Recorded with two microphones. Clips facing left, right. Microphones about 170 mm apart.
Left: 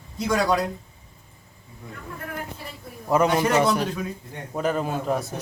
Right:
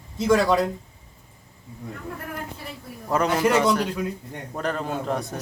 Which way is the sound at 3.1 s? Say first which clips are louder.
Left 1 dB; 15° left (ahead or behind).